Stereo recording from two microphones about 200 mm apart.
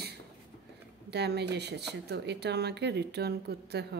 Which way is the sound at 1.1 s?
55° right (ahead or behind).